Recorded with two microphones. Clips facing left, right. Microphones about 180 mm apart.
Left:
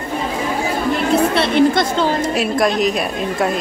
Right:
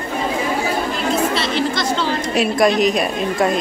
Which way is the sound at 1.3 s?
55° left (ahead or behind).